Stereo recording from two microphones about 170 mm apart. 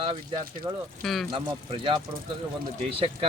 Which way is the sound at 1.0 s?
Centre (ahead or behind).